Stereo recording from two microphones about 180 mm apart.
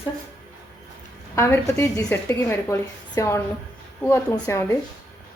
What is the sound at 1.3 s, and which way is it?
A woman's voice, 15° left (ahead or behind).